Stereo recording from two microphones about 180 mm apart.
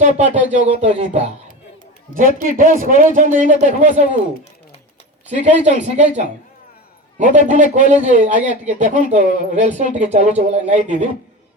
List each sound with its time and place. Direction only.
0.0 s speech: 40° right (ahead or behind)
2.1 s a man's voice: 50° right (ahead or behind)
5.3 s speech: 40° right (ahead or behind)
7.3 s a man's voice: 45° right (ahead or behind)